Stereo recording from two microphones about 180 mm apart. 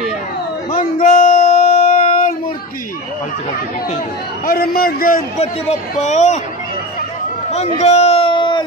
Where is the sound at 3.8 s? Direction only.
45° left (ahead or behind).